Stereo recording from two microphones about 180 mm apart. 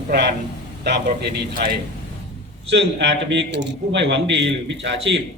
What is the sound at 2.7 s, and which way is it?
A man's voice, 85° right.